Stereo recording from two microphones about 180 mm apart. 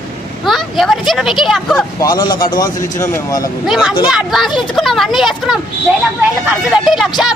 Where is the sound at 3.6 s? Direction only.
5° right (ahead or behind).